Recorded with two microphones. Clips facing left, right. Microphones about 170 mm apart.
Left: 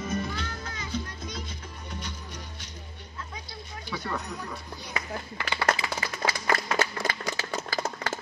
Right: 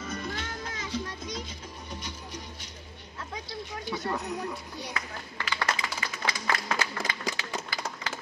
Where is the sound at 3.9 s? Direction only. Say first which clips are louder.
Right 1 dB; 25° right (ahead or behind).